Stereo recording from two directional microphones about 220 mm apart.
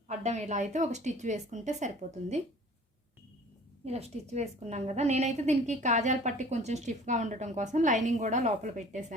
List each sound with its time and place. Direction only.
0.1 s a woman's voice: 30° right (ahead or behind)
3.8 s a woman's voice: 30° right (ahead or behind)